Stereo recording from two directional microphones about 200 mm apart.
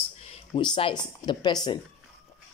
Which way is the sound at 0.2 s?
30° left (ahead or behind).